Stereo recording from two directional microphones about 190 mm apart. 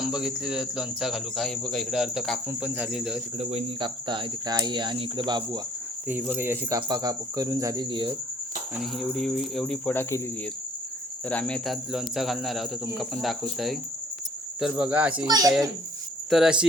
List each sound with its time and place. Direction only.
0.0 s speech: 5° right (ahead or behind)
3.3 s speech: 30° right (ahead or behind)
6.1 s speech: 10° right (ahead or behind)
8.7 s speech: centre (ahead or behind)
11.3 s speech: 5° left (ahead or behind)
15.3 s speech: 20° right (ahead or behind)
16.3 s speech: 5° right (ahead or behind)